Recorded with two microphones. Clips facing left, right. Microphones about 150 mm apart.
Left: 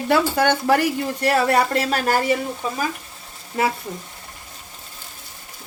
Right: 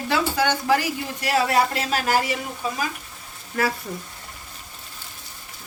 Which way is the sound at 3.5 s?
25° left (ahead or behind).